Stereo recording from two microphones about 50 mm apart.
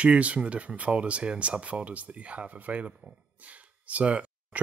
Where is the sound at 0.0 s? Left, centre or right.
Right.